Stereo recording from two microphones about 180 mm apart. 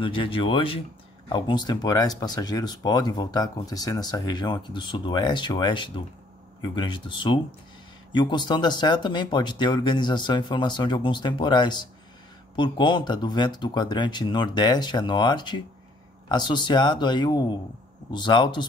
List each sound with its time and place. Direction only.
0.0 s speech: 30° left (ahead or behind)